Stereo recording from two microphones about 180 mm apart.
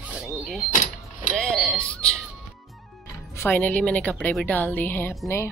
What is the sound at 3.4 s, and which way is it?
A woman's voice, 10° left (ahead or behind).